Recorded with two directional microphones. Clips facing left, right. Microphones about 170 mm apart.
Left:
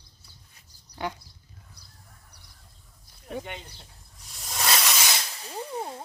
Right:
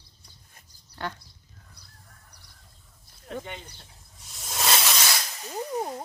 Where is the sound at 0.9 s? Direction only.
10° left (ahead or behind).